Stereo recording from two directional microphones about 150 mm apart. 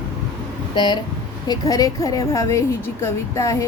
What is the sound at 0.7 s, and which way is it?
A woman's voice, 30° left (ahead or behind).